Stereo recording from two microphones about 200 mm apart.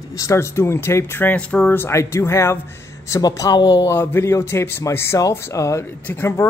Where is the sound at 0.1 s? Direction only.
15° left (ahead or behind).